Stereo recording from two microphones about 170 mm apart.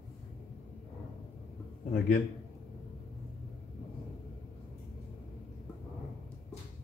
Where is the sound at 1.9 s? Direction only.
50° left (ahead or behind).